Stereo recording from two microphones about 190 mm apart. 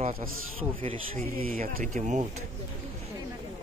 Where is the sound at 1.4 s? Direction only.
45° right (ahead or behind).